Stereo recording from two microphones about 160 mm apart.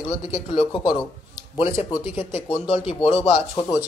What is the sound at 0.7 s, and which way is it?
Speech, 30° left (ahead or behind).